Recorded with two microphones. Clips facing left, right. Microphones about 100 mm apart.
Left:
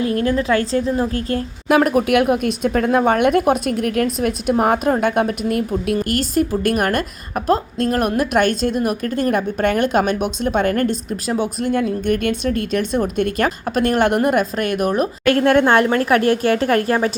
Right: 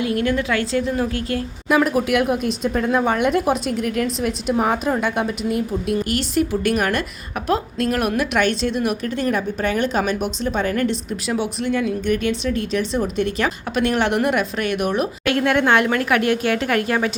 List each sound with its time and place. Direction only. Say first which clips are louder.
0.0 s a woman's voice: left 2 dB; 35° left (ahead or behind)
1.6 s speech: left 3 dB; 55° left (ahead or behind); by 17.1 s 35° left (ahead or behind)